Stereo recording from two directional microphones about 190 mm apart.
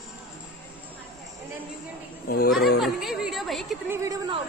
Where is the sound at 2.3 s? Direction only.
55° left (ahead or behind).